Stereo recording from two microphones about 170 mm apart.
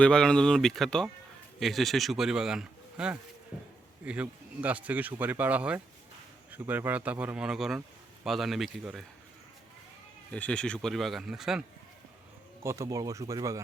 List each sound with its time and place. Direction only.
0.0 s speech: 5° left (ahead or behind)
10.3 s speech: 5° left (ahead or behind)
12.6 s speech: 15° right (ahead or behind)